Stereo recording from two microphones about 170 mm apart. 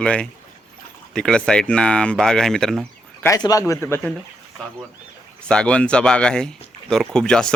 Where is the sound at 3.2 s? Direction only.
20° left (ahead or behind).